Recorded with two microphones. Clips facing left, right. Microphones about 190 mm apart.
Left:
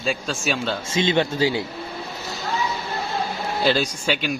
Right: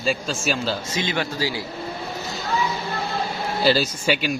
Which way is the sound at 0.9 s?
25° left (ahead or behind).